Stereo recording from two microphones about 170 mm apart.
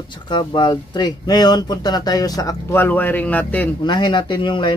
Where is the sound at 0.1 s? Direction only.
25° left (ahead or behind); by 3.7 s 10° left (ahead or behind).